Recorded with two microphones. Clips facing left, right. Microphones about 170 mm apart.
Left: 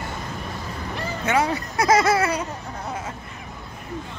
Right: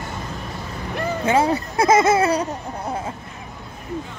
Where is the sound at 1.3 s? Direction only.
30° right (ahead or behind).